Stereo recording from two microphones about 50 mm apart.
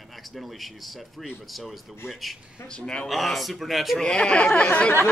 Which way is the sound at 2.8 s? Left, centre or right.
Left.